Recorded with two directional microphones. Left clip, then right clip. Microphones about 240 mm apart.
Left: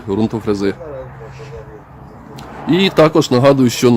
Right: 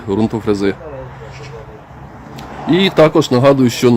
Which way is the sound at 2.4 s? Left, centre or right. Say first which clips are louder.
Right 1 dB; centre.